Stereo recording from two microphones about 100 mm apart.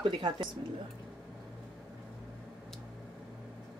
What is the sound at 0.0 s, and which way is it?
Speech, 50° right (ahead or behind).